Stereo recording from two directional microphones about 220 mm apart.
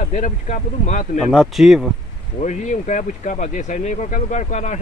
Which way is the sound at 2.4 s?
35° left (ahead or behind).